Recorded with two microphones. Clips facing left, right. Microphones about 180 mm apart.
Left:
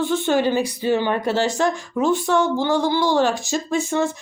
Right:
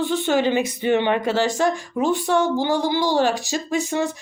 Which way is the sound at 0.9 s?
70° right (ahead or behind).